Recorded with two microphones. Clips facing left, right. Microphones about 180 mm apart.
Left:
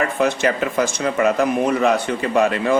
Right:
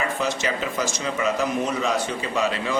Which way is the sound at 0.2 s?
55° left (ahead or behind).